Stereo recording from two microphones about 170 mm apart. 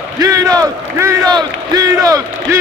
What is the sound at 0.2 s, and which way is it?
Speech, 20° right (ahead or behind).